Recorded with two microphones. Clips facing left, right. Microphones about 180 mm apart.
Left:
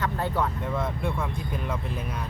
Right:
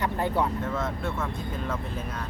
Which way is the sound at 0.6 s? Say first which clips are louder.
Left 1 dB; 10° left (ahead or behind).